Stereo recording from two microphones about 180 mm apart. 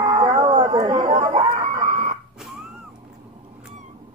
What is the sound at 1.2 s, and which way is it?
Chicken, 30° right (ahead or behind).